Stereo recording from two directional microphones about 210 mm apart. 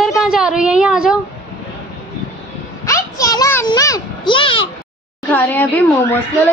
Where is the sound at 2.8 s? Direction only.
15° left (ahead or behind).